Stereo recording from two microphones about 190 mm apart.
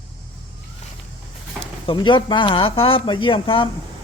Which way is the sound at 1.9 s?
25° left (ahead or behind).